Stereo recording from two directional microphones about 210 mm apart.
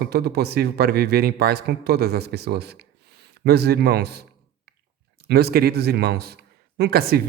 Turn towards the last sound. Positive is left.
turn(degrees=-45)  # may be behind; listen again after turning